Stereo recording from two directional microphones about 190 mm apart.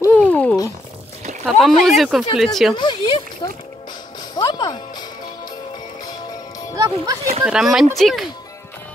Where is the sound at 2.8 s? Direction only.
25° left (ahead or behind).